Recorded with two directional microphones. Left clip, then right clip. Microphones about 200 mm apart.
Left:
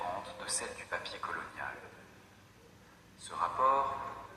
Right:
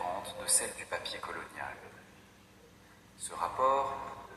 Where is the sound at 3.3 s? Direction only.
35° right (ahead or behind).